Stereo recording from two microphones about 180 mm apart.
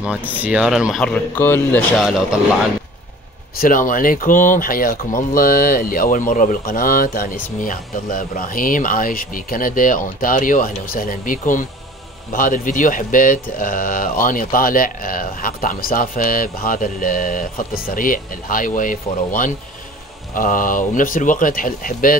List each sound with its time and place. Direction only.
0.0 s speech: 10° right (ahead or behind); by 1.8 s 10° left (ahead or behind)
2.0 s speech: centre (ahead or behind)
3.5 s speech: 50° left (ahead or behind)